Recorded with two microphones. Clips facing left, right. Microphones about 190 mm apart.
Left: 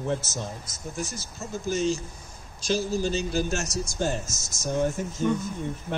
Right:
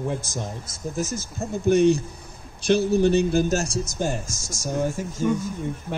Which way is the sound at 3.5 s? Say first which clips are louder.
Right 6 dB; 35° right (ahead or behind).